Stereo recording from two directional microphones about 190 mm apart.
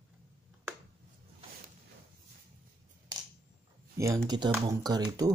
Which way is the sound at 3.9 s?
15° right (ahead or behind).